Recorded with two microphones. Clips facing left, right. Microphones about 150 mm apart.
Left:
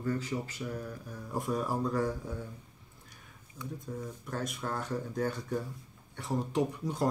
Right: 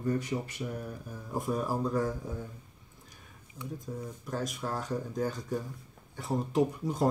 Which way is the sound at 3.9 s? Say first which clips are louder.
Right 1 dB; 10° right (ahead or behind).